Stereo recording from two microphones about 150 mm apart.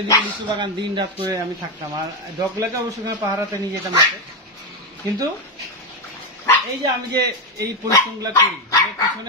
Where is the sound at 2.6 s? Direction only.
20° right (ahead or behind).